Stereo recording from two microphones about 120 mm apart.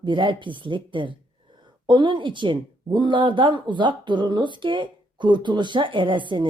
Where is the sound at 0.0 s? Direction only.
40° right (ahead or behind).